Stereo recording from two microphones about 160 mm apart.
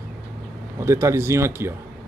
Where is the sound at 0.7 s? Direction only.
15° right (ahead or behind).